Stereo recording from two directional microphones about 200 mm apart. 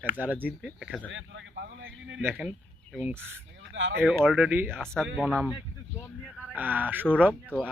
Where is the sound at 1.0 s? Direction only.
70° right (ahead or behind).